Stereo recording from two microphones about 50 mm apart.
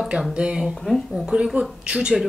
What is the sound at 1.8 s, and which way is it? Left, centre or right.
Speech, centre.